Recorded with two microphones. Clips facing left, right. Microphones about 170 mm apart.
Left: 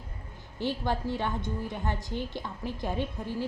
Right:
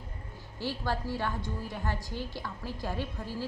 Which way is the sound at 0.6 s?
20° left (ahead or behind).